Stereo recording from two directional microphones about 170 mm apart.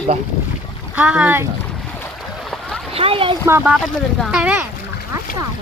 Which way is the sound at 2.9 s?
35° right (ahead or behind).